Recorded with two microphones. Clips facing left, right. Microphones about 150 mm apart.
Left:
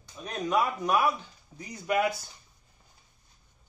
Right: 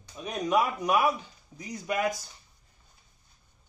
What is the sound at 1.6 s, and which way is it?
Speech, centre (ahead or behind).